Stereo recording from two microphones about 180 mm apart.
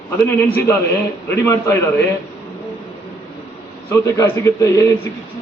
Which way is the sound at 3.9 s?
15° left (ahead or behind).